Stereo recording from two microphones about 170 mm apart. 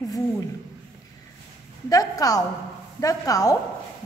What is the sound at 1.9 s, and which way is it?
A woman's voice, 20° left (ahead or behind).